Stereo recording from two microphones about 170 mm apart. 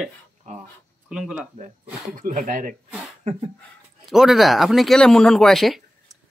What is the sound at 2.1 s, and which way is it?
Speech, 50° right (ahead or behind).